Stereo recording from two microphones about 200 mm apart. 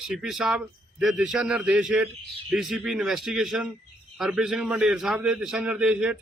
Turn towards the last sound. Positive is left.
turn(degrees=-5)  # may be behind; listen again after turning